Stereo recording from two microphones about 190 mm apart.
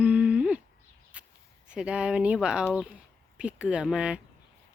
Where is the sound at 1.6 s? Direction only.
5° right (ahead or behind).